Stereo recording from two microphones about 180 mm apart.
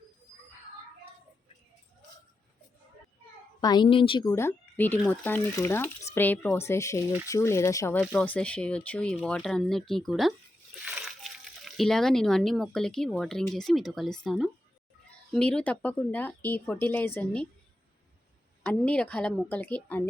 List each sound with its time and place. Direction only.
3.6 s speech: 25° left (ahead or behind); by 17.5 s 5° left (ahead or behind)
18.6 s speech: 5° left (ahead or behind)